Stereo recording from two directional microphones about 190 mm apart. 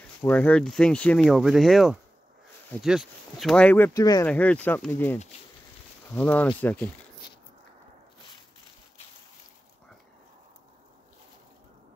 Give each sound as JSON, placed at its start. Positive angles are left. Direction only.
{"t": 0.2, "sound": "speech", "side_deg": 10}
{"t": 4.3, "sound": "speech", "side_deg": 5}